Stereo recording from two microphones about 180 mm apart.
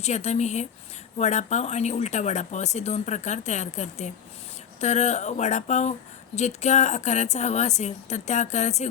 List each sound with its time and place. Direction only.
0.0 s speech: 40° left (ahead or behind)